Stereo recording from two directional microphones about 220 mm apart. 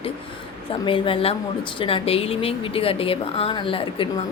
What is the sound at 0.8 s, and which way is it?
A woman's voice, 25° left (ahead or behind).